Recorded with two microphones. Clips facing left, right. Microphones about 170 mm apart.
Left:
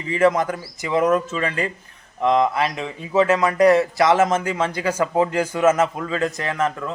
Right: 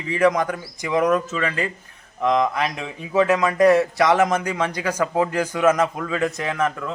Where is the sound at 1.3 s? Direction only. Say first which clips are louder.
Even; 30° left (ahead or behind).